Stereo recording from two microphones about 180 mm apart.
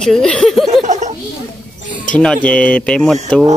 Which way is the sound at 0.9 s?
45° right (ahead or behind).